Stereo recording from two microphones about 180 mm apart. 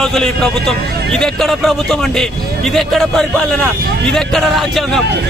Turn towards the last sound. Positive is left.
turn(degrees=0)  # may be behind; listen again after turning